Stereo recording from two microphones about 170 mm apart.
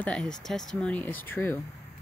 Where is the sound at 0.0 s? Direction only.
5° left (ahead or behind).